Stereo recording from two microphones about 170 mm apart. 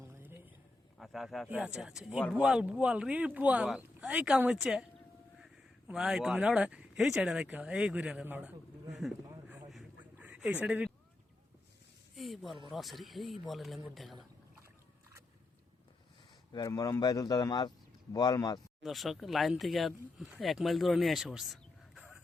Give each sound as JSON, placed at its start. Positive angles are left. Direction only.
{"t": 0.0, "sound": "a sound", "side_deg": -15}
{"t": 0.9, "sound": "speech", "side_deg": 0}
{"t": 5.9, "sound": "speech", "side_deg": -5}
{"t": 10.2, "sound": "a sound", "side_deg": -10}
{"t": 12.1, "sound": "speech", "side_deg": 0}
{"t": 16.5, "sound": "a man's voice", "side_deg": 20}
{"t": 18.8, "sound": "speech", "side_deg": 0}